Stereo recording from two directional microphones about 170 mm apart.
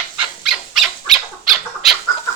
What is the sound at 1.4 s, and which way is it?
Bird, centre (ahead or behind).